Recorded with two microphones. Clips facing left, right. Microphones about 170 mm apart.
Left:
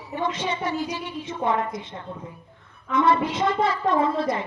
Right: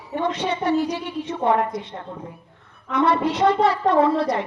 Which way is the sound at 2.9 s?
70° right (ahead or behind).